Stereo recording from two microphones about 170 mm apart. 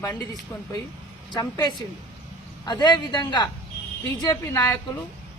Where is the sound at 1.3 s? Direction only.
25° left (ahead or behind).